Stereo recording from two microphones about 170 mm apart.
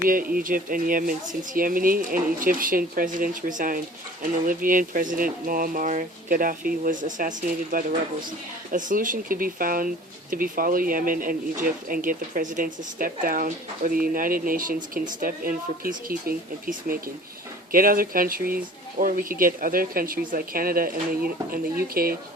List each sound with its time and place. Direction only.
0.0 s speech: 55° right (ahead or behind)